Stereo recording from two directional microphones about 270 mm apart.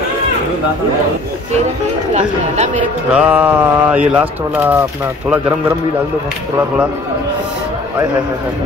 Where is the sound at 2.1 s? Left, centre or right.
Right.